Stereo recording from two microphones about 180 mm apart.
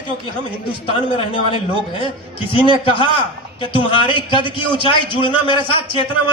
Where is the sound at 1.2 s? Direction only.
30° left (ahead or behind).